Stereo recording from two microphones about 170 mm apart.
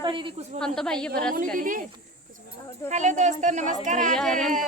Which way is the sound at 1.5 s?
50° right (ahead or behind).